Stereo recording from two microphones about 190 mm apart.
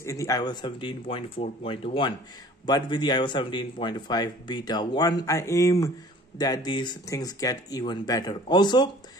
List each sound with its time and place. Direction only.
0.0 s speech: 15° left (ahead or behind)